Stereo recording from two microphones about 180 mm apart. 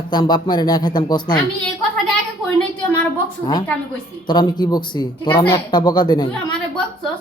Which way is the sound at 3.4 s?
25° left (ahead or behind).